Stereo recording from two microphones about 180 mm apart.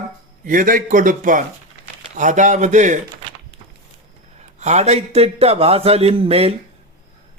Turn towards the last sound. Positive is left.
turn(degrees=-35)  # may be behind; listen again after turning